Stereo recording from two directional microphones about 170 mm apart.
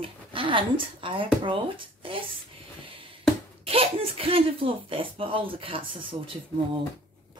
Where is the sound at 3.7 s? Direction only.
35° right (ahead or behind).